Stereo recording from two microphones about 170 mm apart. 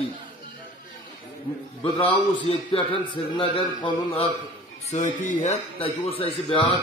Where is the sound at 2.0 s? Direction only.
35° left (ahead or behind).